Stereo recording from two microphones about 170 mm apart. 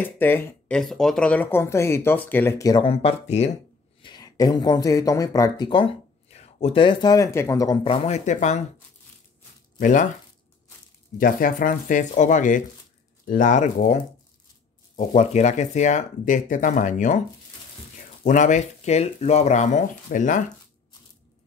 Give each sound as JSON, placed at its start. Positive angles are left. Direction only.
{"t": 0.0, "sound": "speech", "side_deg": 10}
{"t": 2.7, "sound": "speech", "side_deg": 35}
{"t": 4.0, "sound": "speech", "side_deg": 25}
{"t": 9.8, "sound": "speech", "side_deg": 50}
{"t": 11.1, "sound": "speech", "side_deg": 55}
{"t": 15.0, "sound": "speech", "side_deg": 40}
{"t": 18.2, "sound": "speech", "side_deg": 45}